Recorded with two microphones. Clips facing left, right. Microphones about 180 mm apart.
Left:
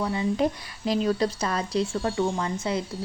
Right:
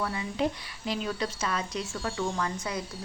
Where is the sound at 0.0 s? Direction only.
25° left (ahead or behind).